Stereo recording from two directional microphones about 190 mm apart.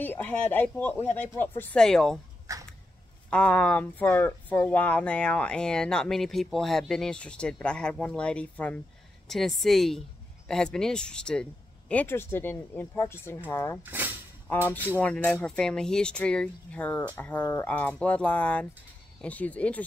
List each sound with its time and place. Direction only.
0.0 s speech: 10° left (ahead or behind)
2.5 s a sound: 15° right (ahead or behind)
3.3 s speech: 5° left (ahead or behind)
15.0 s speech: 5° left (ahead or behind)